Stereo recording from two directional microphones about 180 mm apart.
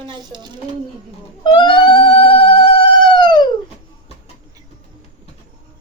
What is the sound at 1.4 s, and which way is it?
Cat, 25° left (ahead or behind).